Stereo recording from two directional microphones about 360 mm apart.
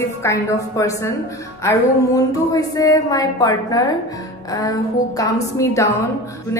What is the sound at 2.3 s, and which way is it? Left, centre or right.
A woman's voice, centre.